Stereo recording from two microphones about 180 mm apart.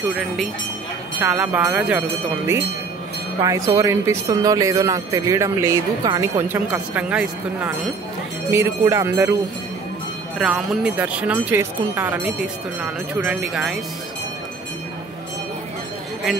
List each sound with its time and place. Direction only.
0.1 s speech: centre (ahead or behind)
8.5 s speech: 15° right (ahead or behind)
10.4 s speech: centre (ahead or behind)